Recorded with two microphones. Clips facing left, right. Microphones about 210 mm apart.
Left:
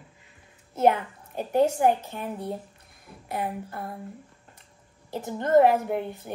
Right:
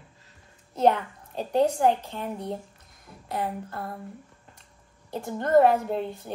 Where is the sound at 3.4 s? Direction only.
5° left (ahead or behind).